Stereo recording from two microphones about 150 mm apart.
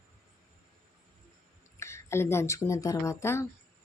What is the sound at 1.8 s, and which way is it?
Speech, 20° left (ahead or behind).